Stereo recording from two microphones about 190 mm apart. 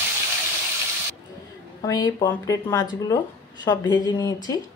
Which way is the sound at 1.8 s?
20° left (ahead or behind).